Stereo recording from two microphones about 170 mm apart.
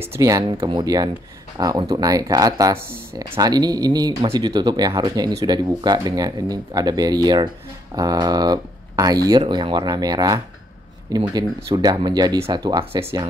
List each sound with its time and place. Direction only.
0.0 s speech: 15° right (ahead or behind)